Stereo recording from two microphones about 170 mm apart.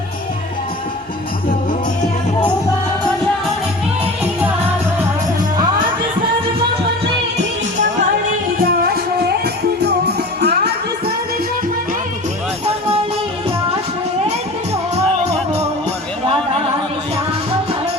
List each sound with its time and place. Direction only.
8.5 s music: 60° right (ahead or behind)
9.4 s music: 75° right (ahead or behind)